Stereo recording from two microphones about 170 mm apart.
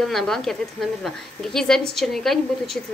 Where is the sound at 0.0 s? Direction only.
Centre (ahead or behind).